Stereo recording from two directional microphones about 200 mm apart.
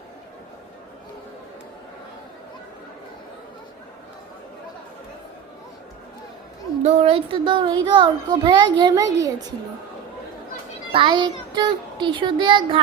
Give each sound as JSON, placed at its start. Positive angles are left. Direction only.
{"t": 6.8, "sound": "a child's voice", "side_deg": -30}
{"t": 10.9, "sound": "a child's voice", "side_deg": -25}